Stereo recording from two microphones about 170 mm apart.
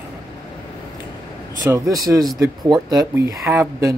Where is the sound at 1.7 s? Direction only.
20° right (ahead or behind).